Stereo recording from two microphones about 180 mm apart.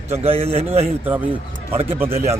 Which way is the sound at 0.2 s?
35° right (ahead or behind).